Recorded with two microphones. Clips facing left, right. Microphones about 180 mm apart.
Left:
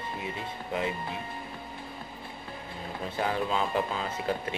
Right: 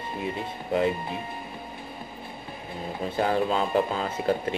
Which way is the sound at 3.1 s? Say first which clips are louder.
Right 5 dB; 45° right (ahead or behind).